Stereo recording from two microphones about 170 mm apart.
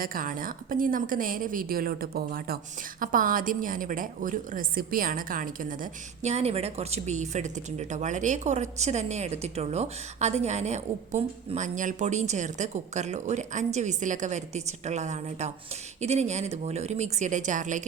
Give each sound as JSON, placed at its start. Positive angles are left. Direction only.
{"t": 0.0, "sound": "a woman's voice", "side_deg": -55}